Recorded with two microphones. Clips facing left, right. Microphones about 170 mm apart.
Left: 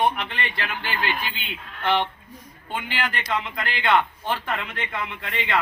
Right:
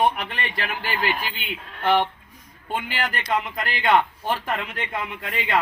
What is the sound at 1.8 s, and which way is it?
Speech, 5° right (ahead or behind).